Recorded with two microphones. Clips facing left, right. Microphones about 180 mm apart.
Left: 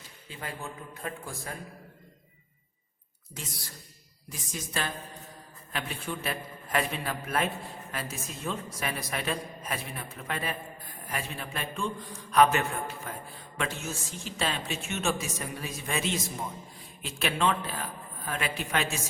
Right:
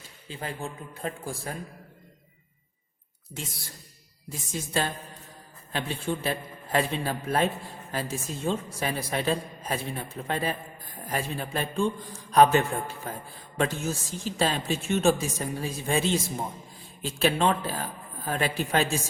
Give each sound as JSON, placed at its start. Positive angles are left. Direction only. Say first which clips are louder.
{"t": 0.3, "sound": "a man's voice", "louder": "right 4 dB", "side_deg": -30}
{"t": 4.3, "sound": "a man's voice", "louder": "right 5 dB", "side_deg": -30}